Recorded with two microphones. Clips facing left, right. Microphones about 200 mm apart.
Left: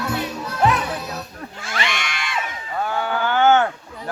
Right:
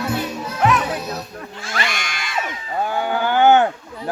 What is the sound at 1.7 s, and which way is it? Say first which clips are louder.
Crowd: even; 40° right (ahead or behind).